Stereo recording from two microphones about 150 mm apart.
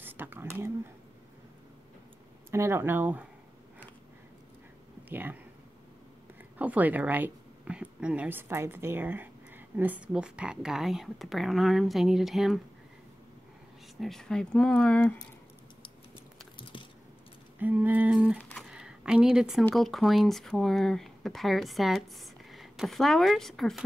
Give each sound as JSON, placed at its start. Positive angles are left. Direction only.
{"t": 0.0, "sound": "speech", "side_deg": -15}
{"t": 2.5, "sound": "speech", "side_deg": -15}
{"t": 5.1, "sound": "speech", "side_deg": -15}
{"t": 6.6, "sound": "speech", "side_deg": -10}
{"t": 13.9, "sound": "speech", "side_deg": 0}
{"t": 17.6, "sound": "speech", "side_deg": -10}
{"t": 18.4, "sound": "a sound", "side_deg": 5}
{"t": 19.6, "sound": "speech", "side_deg": 0}